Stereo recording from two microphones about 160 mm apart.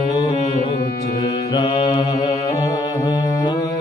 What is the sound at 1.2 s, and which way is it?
Mantra, 30° left (ahead or behind).